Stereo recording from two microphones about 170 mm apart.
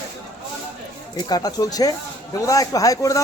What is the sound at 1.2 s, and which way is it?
Speech, 20° left (ahead or behind).